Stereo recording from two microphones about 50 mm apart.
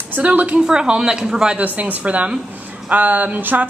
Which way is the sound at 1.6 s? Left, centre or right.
Right.